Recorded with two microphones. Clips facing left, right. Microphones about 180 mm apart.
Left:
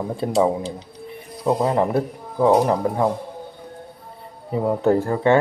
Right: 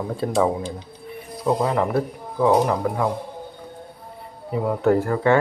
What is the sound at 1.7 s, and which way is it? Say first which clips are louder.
Speech: left 2 dB; 25° left (ahead or behind).